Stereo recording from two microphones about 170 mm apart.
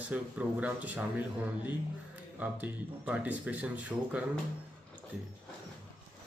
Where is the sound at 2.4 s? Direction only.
10° right (ahead or behind).